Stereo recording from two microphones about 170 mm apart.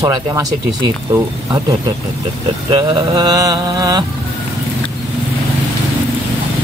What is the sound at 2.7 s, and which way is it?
Mantra, 25° right (ahead or behind).